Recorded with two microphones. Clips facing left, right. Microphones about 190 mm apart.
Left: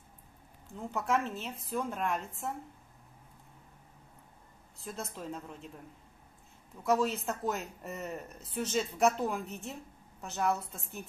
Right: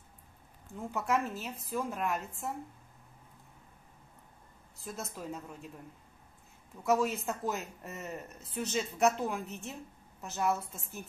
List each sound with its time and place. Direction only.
0.7 s a woman's voice: centre (ahead or behind)
4.8 s a woman's voice: centre (ahead or behind)
6.8 s a woman's voice: centre (ahead or behind)